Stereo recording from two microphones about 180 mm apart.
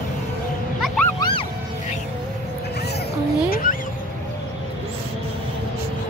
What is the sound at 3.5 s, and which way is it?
Fowl, 50° left (ahead or behind).